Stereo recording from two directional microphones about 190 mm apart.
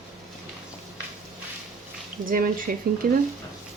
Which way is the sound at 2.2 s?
45° right (ahead or behind).